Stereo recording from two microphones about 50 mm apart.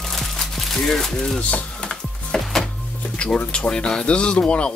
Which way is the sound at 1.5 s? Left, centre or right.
Centre.